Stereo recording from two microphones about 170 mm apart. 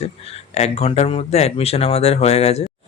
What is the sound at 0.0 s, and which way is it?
Speech, 40° left (ahead or behind).